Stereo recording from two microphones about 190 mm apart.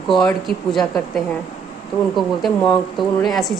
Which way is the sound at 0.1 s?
Centre (ahead or behind).